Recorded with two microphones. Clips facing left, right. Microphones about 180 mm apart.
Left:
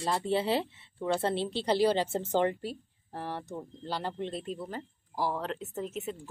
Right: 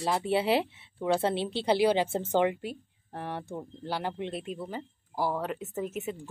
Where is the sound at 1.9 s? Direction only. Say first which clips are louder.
Right 2 dB; 10° right (ahead or behind).